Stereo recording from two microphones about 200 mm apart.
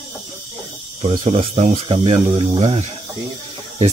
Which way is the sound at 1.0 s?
30° right (ahead or behind).